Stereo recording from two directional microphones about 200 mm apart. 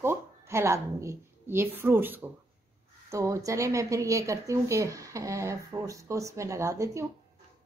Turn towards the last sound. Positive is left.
turn(degrees=-15)  # may be behind; listen again after turning